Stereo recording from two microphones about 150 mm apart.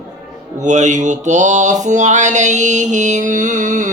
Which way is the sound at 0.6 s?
50° right (ahead or behind).